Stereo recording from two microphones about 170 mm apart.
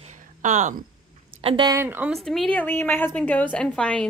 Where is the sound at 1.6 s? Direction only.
15° right (ahead or behind).